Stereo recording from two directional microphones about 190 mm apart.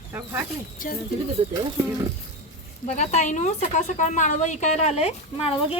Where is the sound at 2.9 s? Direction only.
40° left (ahead or behind).